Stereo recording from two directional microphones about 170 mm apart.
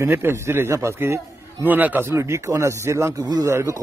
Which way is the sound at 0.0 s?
15° right (ahead or behind).